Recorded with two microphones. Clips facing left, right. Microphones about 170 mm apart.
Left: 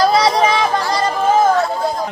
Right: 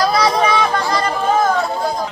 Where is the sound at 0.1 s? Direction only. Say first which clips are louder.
Left 1 dB; 25° left (ahead or behind).